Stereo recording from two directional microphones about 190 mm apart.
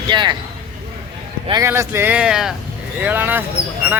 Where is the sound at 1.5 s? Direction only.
15° right (ahead or behind).